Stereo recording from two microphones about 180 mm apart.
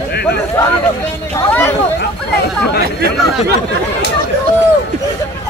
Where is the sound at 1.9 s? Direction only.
60° left (ahead or behind).